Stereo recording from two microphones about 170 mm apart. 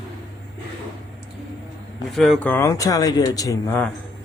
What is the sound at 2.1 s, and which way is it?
Speech, centre (ahead or behind).